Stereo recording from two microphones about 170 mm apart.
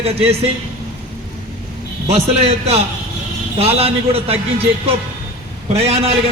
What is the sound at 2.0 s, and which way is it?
A man's voice, 40° right (ahead or behind).